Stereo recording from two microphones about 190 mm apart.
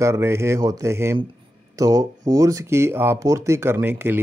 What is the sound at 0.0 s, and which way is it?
Speech, 15° right (ahead or behind).